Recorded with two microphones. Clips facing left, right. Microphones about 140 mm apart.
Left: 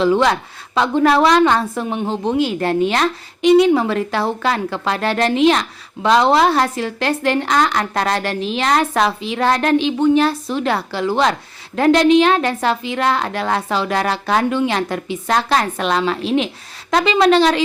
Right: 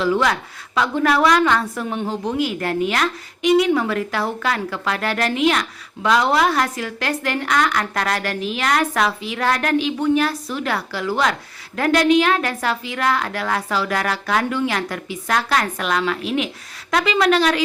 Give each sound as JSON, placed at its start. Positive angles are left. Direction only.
{"t": 0.0, "sound": "a woman's voice", "side_deg": 25}